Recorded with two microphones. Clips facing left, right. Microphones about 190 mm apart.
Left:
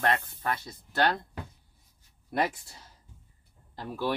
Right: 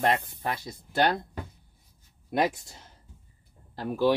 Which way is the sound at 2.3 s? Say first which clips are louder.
Right 3 dB; 10° right (ahead or behind).